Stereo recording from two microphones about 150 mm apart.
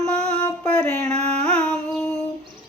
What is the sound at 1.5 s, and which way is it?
Humming, 5° left (ahead or behind).